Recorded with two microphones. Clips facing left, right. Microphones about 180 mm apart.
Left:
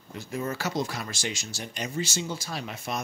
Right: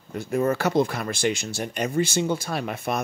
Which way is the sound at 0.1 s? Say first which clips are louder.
Right 9 dB; 55° right (ahead or behind).